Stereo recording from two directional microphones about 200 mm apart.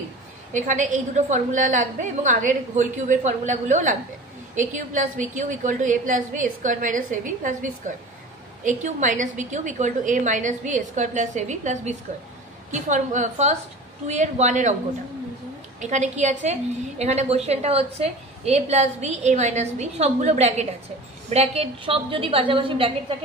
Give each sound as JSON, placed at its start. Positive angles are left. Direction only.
{"t": 0.5, "sound": "a woman's voice", "side_deg": -40}
{"t": 15.8, "sound": "a woman's voice", "side_deg": -35}